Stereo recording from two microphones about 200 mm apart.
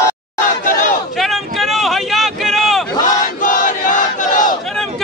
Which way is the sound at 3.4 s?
40° left (ahead or behind).